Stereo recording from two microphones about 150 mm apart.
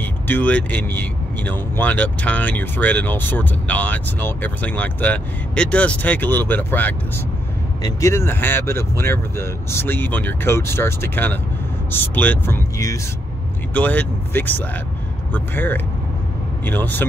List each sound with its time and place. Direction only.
0.0 s speech: 10° left (ahead or behind)